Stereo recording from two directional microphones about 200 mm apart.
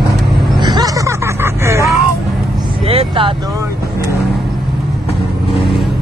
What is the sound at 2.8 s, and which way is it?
Vehicle, 30° right (ahead or behind).